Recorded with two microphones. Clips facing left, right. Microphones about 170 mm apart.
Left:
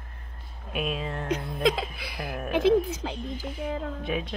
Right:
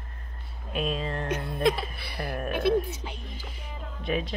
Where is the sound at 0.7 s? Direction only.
5° left (ahead or behind).